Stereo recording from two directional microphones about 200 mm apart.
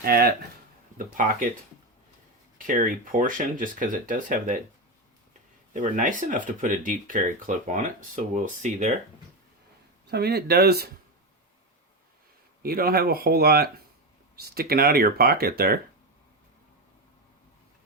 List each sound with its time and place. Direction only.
0.0 s speech: 50° right (ahead or behind)
2.6 s speech: 40° right (ahead or behind)
5.7 s speech: 40° right (ahead or behind)
10.1 s speech: 55° right (ahead or behind)
12.6 s speech: 50° right (ahead or behind)